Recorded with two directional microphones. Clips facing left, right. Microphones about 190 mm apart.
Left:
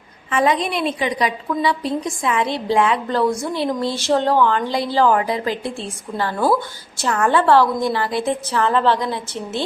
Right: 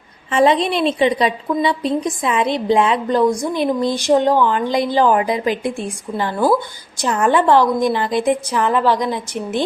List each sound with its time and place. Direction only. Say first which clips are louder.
0.3 s a woman's voice: right 4 dB; 25° right (ahead or behind)